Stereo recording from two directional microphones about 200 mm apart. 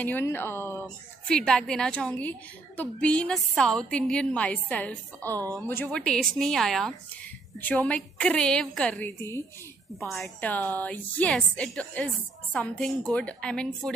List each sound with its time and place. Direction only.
0.0 s a woman's voice: 10° left (ahead or behind)
5.4 s speech: 15° right (ahead or behind)
5.7 s a woman's voice: 5° left (ahead or behind)
9.9 s a woman's voice: centre (ahead or behind)